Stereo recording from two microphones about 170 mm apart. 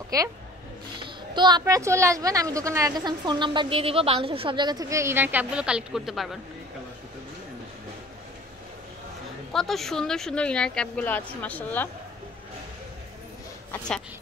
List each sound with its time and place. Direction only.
0.1 s speech: 20° right (ahead or behind)
1.0 s a sound: 25° right (ahead or behind)
1.6 s speech: 15° right (ahead or behind)
9.5 s a woman's voice: centre (ahead or behind)
13.7 s speech: 5° left (ahead or behind)